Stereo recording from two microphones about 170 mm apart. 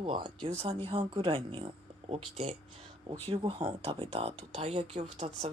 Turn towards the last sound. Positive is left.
turn(degrees=-40)  # may be behind; listen again after turning